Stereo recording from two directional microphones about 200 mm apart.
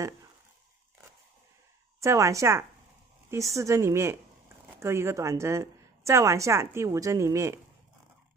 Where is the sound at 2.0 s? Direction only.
15° right (ahead or behind).